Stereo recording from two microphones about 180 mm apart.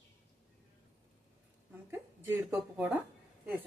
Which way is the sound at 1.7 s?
15° right (ahead or behind).